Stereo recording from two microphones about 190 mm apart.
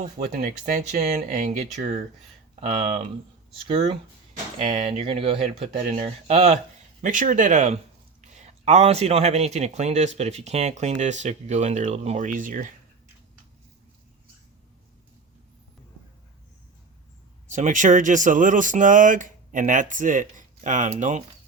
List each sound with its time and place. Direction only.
0.0 s speech: 40° right (ahead or behind)
17.5 s speech: 40° right (ahead or behind)